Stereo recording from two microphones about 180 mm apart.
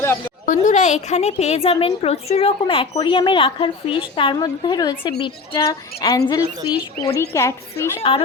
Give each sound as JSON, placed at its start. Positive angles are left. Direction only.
{"t": 0.4, "sound": "a woman's voice", "side_deg": 45}